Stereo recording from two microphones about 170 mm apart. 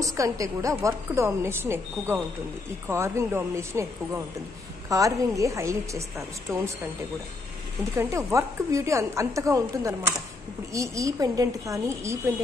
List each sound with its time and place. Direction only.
0.0 s a woman's voice: 20° right (ahead or behind)
7.9 s a woman's voice: 20° right (ahead or behind)